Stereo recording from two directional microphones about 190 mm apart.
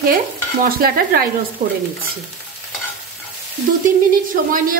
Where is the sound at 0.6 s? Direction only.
50° right (ahead or behind).